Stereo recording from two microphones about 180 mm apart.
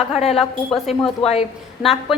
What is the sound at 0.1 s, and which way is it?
Speech, 35° left (ahead or behind).